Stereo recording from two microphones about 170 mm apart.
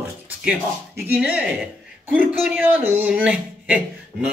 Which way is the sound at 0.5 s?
10° right (ahead or behind).